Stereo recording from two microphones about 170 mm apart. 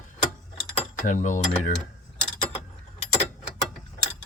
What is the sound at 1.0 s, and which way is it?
Speech, 45° left (ahead or behind).